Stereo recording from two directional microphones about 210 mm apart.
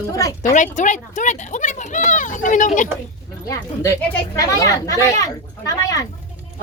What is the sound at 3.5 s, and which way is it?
Speech, 15° left (ahead or behind).